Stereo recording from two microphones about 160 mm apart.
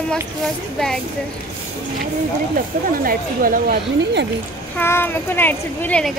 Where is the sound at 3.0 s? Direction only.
60° right (ahead or behind); by 4.3 s 75° right (ahead or behind).